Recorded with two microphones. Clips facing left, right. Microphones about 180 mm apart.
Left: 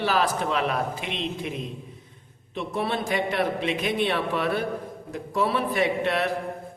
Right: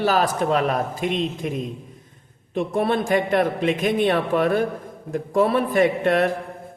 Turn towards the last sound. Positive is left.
turn(degrees=-50)  # may be behind; listen again after turning